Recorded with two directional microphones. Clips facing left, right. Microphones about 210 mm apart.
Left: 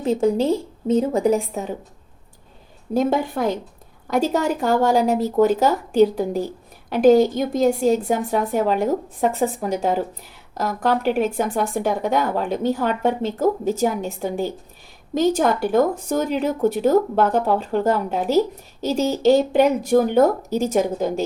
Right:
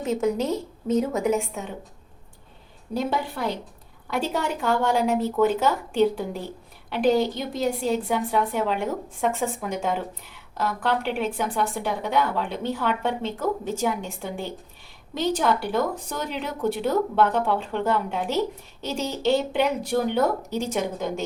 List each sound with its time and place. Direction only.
0.0 s speech: 30° left (ahead or behind)
2.9 s a woman's voice: 45° left (ahead or behind)